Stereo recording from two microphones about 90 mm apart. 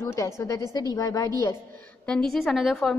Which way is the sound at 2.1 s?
5° left (ahead or behind).